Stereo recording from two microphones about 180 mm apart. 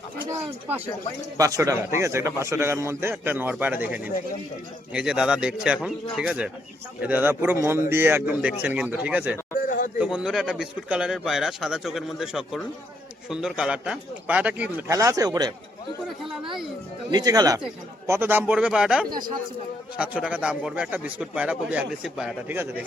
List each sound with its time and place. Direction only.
1.4 s a man's voice: 20° right (ahead or behind)
4.9 s a man's voice: 5° right (ahead or behind)
9.6 s a sound: 50° left (ahead or behind)
10.0 s a man's voice: 5° right (ahead or behind); by 15.5 s 20° right (ahead or behind)
17.1 s a man's voice: 20° right (ahead or behind)